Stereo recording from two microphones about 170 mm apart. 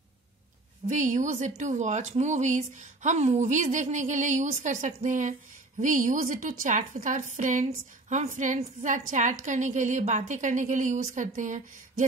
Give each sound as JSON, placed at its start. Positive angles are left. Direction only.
{"t": 0.8, "sound": "a woman's voice", "side_deg": -45}